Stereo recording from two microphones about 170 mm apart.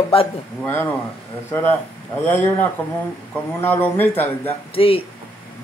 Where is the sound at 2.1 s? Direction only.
10° left (ahead or behind).